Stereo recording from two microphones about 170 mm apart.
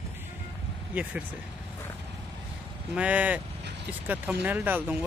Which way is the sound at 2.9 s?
10° right (ahead or behind).